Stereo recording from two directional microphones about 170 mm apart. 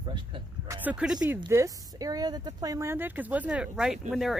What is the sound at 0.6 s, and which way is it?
Speech, 10° right (ahead or behind).